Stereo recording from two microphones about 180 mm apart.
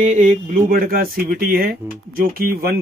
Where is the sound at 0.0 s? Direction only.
40° right (ahead or behind).